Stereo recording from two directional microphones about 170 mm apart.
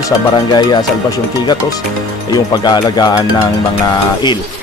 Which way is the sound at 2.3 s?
25° left (ahead or behind).